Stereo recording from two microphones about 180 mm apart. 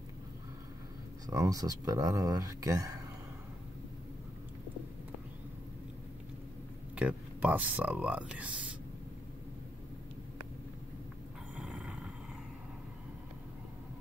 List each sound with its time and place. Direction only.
1.2 s speech: 20° right (ahead or behind)
7.0 s speech: 10° right (ahead or behind)
11.5 s a sound: 5° right (ahead or behind)